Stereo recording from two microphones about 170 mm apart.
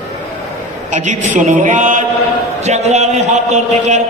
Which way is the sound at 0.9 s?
45° right (ahead or behind).